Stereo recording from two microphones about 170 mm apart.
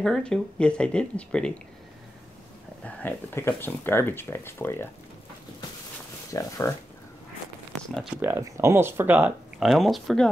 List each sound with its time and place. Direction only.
0.0 s speech: 5° left (ahead or behind)
2.8 s speech: 10° left (ahead or behind)
6.3 s speech: 15° left (ahead or behind)
7.7 s a sound: 5° left (ahead or behind)
8.2 s speech: 15° right (ahead or behind); by 10.3 s centre (ahead or behind)